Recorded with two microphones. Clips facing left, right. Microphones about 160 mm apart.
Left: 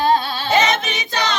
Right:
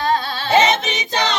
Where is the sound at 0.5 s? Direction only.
25° right (ahead or behind).